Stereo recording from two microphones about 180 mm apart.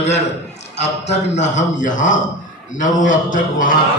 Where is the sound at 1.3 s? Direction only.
40° left (ahead or behind).